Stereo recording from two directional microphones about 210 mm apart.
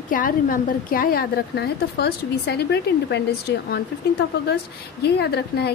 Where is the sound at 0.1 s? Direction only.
40° left (ahead or behind).